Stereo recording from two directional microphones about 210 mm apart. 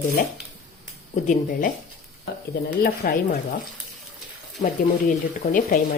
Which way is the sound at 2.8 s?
45° left (ahead or behind).